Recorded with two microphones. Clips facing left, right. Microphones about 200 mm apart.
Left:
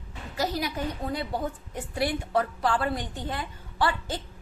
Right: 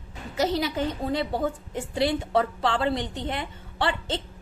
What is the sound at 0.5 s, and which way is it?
A woman's voice, 25° right (ahead or behind).